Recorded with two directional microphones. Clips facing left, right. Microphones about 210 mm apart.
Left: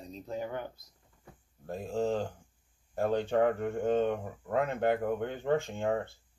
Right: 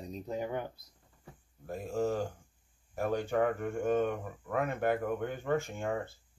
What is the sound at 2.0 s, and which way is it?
Speech, 20° left (ahead or behind).